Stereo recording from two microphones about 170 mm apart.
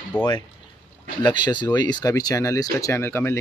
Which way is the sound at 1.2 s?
25° left (ahead or behind).